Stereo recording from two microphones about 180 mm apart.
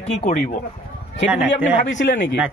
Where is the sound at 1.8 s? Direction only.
80° left.